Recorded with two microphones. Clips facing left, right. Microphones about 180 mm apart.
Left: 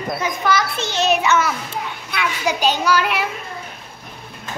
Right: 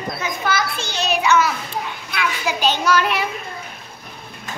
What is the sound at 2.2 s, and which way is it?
Speech, 15° left (ahead or behind).